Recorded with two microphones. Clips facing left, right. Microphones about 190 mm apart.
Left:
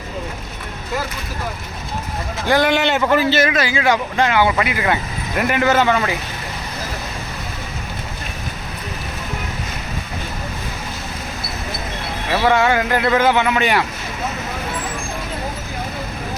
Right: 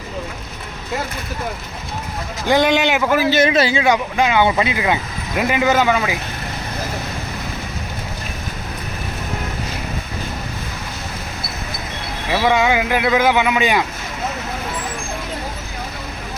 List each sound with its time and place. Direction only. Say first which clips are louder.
2.5 s speech: right 1 dB; 20° right (ahead or behind)
3.0 s a man's voice: even; 5° right (ahead or behind)
3.3 s speech: right 2 dB; 25° right (ahead or behind)
3.8 s speech: right 1 dB; 15° right (ahead or behind)
12.3 s speech: even; 15° right (ahead or behind)